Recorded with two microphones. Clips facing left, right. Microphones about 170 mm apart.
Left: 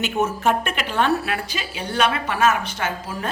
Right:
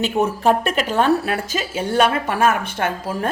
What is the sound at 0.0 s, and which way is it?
A woman's voice, 35° right (ahead or behind).